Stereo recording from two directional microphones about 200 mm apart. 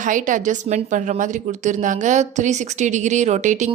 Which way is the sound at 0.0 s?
40° right (ahead or behind).